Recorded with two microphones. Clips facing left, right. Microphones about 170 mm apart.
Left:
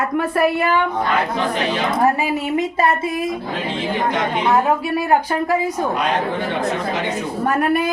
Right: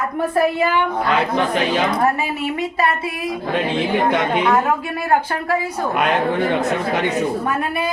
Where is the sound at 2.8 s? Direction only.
25° left (ahead or behind).